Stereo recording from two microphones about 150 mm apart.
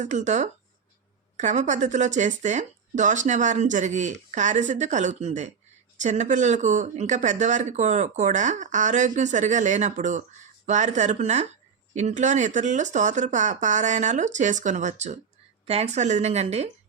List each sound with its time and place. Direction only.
0.0 s speech: 55° right (ahead or behind)